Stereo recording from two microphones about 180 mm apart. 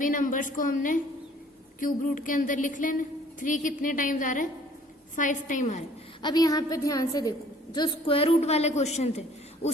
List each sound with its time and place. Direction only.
0.0 s a woman's voice: 45° left (ahead or behind)
6.2 s a woman's voice: 20° left (ahead or behind); by 9.2 s 40° left (ahead or behind)
9.6 s hoot: 35° left (ahead or behind)